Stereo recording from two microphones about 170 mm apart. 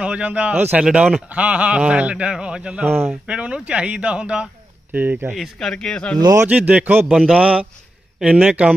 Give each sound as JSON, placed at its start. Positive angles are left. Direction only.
{"t": 0.0, "sound": "a man's voice", "side_deg": -5}
{"t": 6.1, "sound": "speech", "side_deg": -25}
{"t": 6.4, "sound": "a man's voice", "side_deg": -10}